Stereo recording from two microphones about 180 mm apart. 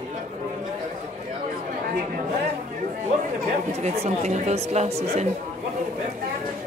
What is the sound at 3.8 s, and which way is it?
Speech, 35° right (ahead or behind).